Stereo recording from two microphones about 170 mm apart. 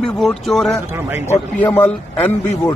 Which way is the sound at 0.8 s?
15° right (ahead or behind).